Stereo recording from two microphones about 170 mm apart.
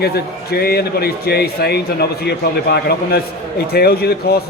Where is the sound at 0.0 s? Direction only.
65° left (ahead or behind).